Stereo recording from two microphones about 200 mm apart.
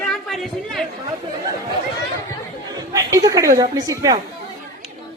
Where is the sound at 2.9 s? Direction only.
15° right (ahead or behind).